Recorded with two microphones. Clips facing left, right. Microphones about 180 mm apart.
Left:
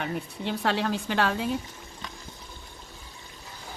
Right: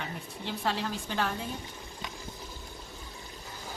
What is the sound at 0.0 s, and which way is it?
Speech, 65° left (ahead or behind).